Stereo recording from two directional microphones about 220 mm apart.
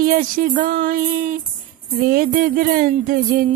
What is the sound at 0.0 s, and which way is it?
Music, 40° right (ahead or behind).